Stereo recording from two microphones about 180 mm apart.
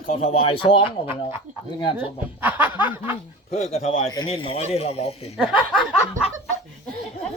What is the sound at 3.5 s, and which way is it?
A man's voice, 35° left (ahead or behind).